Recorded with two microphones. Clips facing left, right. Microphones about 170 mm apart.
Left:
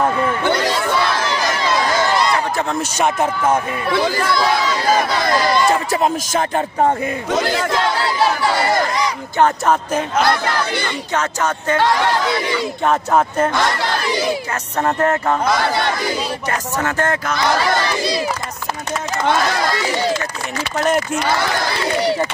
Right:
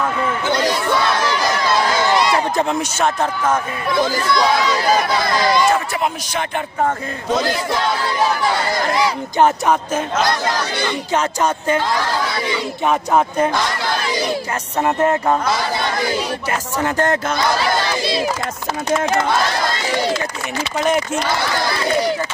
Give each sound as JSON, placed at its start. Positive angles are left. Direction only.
{"t": 2.3, "sound": "a sound", "side_deg": -20}
{"t": 3.0, "sound": "speech", "side_deg": 20}
{"t": 5.7, "sound": "speech", "side_deg": 40}
{"t": 9.0, "sound": "speech", "side_deg": -10}
{"t": 12.8, "sound": "speech", "side_deg": -10}
{"t": 14.8, "sound": "speech", "side_deg": -15}
{"t": 15.6, "sound": "speech", "side_deg": 65}
{"t": 16.8, "sound": "speech", "side_deg": -20}